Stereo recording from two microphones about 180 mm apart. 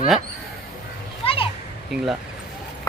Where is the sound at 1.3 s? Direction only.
30° left (ahead or behind).